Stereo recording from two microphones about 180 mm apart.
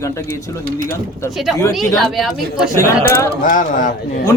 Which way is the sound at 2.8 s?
15° left (ahead or behind).